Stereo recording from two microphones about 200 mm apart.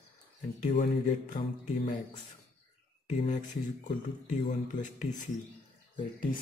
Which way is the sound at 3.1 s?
35° left (ahead or behind).